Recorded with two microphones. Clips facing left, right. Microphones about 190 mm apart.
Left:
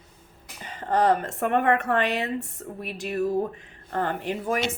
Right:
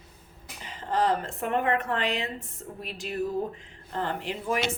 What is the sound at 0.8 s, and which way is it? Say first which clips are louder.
Speech: left 4 dB; 60° left (ahead or behind).